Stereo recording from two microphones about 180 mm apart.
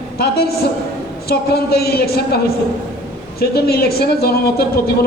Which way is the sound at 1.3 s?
60° left (ahead or behind).